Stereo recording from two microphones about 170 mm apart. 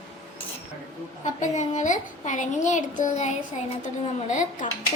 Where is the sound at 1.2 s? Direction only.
45° left (ahead or behind).